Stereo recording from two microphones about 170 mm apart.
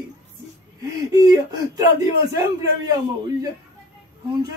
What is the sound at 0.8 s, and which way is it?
Speech, 20° right (ahead or behind).